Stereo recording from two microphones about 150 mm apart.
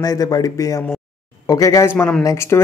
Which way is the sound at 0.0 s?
25° left (ahead or behind).